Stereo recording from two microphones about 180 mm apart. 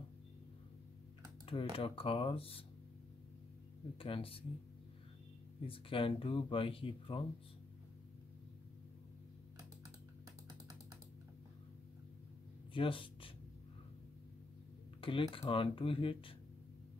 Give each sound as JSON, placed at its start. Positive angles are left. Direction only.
{"t": 1.4, "sound": "speech", "side_deg": 30}
{"t": 4.0, "sound": "speech", "side_deg": 30}
{"t": 5.7, "sound": "speech", "side_deg": 30}
{"t": 12.7, "sound": "speech", "side_deg": 30}
{"t": 15.0, "sound": "speech", "side_deg": 30}